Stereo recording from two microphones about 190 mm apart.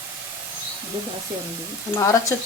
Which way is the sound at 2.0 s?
15° left (ahead or behind).